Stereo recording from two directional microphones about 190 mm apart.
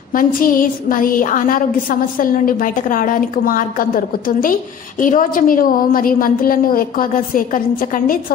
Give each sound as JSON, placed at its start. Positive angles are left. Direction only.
{"t": 0.1, "sound": "a woman's voice", "side_deg": 45}